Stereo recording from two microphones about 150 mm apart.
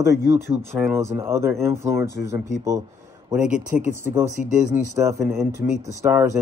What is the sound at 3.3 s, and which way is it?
A man's voice, 5° right (ahead or behind).